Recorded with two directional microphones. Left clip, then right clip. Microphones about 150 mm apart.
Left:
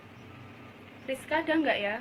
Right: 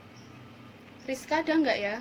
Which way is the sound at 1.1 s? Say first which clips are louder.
Right 1 dB; 60° right (ahead or behind).